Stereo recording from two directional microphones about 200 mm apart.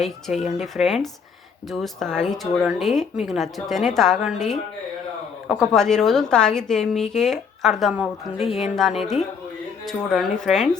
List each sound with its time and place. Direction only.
0.0 s a woman's voice: centre (ahead or behind)